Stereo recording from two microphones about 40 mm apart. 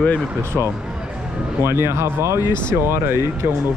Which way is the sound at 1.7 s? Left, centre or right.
Right.